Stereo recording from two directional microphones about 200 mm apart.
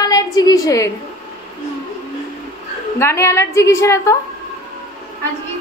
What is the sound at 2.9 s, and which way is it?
A woman's voice, 15° left (ahead or behind).